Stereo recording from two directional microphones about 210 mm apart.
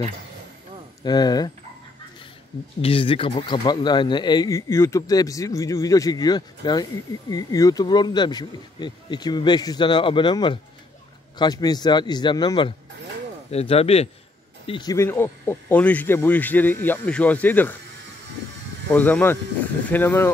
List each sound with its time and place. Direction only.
1.0 s speech: 20° left (ahead or behind)
2.8 s speech: 25° left (ahead or behind)
14.7 s speech: 20° left (ahead or behind)
18.9 s speech: 5° left (ahead or behind)